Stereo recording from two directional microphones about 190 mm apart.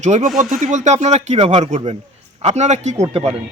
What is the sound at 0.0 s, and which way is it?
A man's voice, 40° right (ahead or behind).